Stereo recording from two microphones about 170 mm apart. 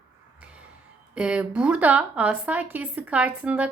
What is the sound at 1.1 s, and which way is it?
A woman's voice, 5° right (ahead or behind).